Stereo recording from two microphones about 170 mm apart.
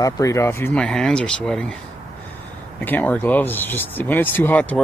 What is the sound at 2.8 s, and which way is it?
Speech, 10° left (ahead or behind).